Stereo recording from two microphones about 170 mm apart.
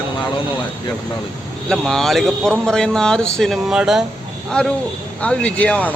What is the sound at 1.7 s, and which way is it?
Speech, 5° left (ahead or behind).